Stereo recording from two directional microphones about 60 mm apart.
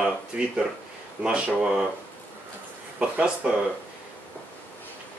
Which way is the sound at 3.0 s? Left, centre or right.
Centre.